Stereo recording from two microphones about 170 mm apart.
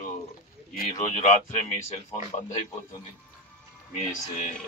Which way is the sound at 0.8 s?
45° left (ahead or behind).